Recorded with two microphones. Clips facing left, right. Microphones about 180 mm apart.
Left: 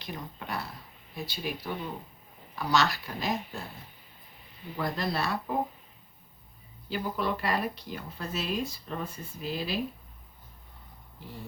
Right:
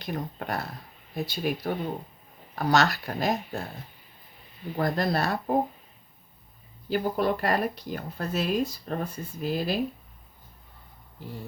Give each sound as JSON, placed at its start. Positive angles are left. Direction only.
{"t": 0.0, "sound": "speech", "side_deg": -50}
{"t": 4.8, "sound": "speech", "side_deg": -45}
{"t": 6.9, "sound": "speech", "side_deg": -50}